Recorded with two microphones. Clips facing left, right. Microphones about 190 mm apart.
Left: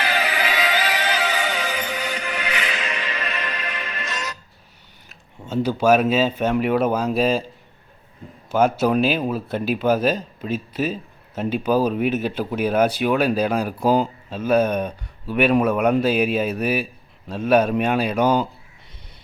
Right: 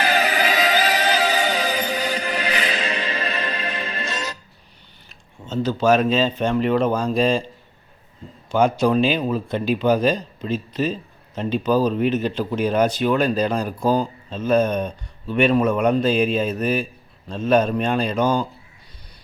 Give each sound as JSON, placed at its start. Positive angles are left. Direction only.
{"t": 0.0, "sound": "music", "side_deg": -40}
{"t": 5.5, "sound": "speech", "side_deg": 10}